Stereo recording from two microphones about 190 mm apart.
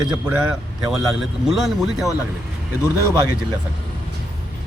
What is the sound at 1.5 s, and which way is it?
Speech, centre (ahead or behind).